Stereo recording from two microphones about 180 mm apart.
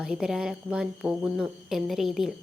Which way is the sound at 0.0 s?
5° right (ahead or behind).